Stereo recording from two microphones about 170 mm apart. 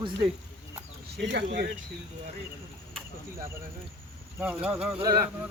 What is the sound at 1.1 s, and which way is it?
Speech, 85° right.